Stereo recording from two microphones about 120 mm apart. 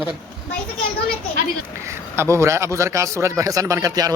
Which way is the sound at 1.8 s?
25° right (ahead or behind).